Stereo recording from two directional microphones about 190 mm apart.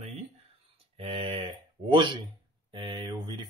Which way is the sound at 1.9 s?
25° right (ahead or behind).